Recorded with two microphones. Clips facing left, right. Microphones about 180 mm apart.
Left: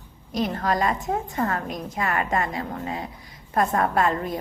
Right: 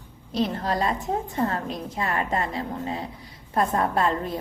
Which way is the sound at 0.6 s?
30° right (ahead or behind).